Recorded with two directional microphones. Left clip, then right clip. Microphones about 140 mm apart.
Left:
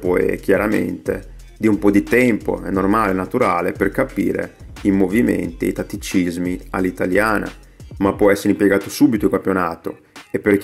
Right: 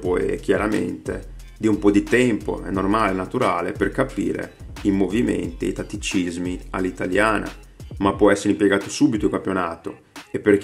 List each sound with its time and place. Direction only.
0.0 s speech: 30° left (ahead or behind)